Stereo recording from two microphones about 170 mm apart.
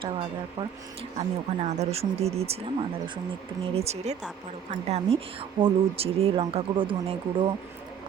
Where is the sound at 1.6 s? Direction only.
40° right (ahead or behind).